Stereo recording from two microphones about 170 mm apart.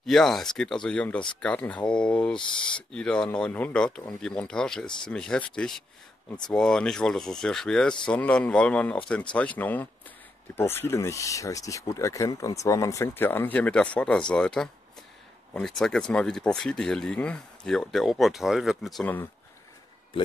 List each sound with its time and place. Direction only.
0.0 s speech: centre (ahead or behind)
2.4 s speech: 30° left (ahead or behind)
2.9 s speech: 5° left (ahead or behind)